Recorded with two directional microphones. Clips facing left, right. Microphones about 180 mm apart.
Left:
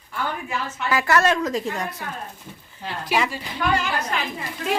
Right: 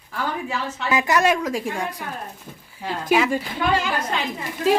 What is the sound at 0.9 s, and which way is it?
Speech, 15° right (ahead or behind).